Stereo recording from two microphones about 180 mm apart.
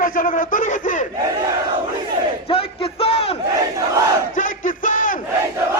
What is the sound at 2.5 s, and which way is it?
Battle cry, 30° left (ahead or behind).